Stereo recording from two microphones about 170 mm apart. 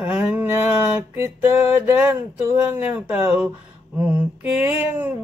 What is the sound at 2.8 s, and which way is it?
Mantra, 10° right (ahead or behind).